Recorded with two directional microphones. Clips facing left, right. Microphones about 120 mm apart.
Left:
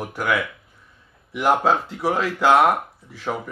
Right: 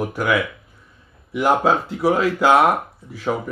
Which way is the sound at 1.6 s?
10° right (ahead or behind).